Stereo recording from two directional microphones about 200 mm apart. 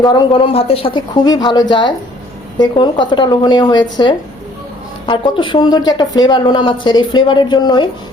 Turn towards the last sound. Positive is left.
turn(degrees=20)  # may be behind; listen again after turning